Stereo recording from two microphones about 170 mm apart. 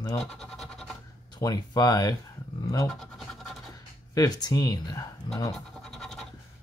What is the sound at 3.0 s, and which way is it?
Scratch, centre (ahead or behind).